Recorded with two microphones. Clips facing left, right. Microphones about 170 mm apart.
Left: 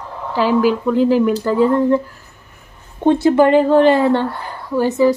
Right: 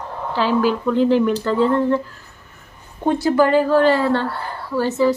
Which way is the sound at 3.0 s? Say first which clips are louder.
Left 4 dB; 25° left (ahead or behind).